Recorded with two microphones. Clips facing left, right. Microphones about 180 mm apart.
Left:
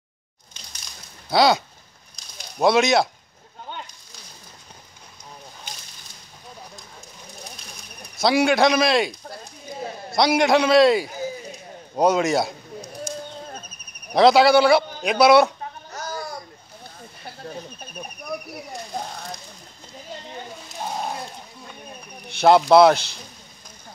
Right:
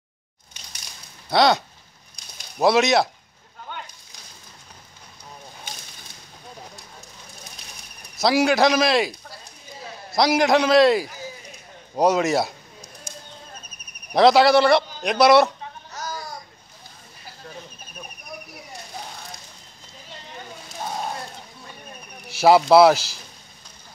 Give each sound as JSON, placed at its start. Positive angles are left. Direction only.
{"t": 1.3, "sound": "a man's voice", "side_deg": 0}
{"t": 2.6, "sound": "a man's voice", "side_deg": 0}
{"t": 8.2, "sound": "a man's voice", "side_deg": 0}
{"t": 10.1, "sound": "a man's voice", "side_deg": 0}
{"t": 14.1, "sound": "a man's voice", "side_deg": 0}
{"t": 15.9, "sound": "babbling", "side_deg": 55}
{"t": 18.3, "sound": "snake", "side_deg": 65}
{"t": 22.3, "sound": "a man's voice", "side_deg": -5}